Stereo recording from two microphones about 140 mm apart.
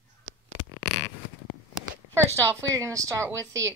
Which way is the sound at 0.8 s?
45° left (ahead or behind).